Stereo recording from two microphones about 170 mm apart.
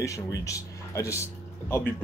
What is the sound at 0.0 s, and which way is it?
Speech, 20° left (ahead or behind).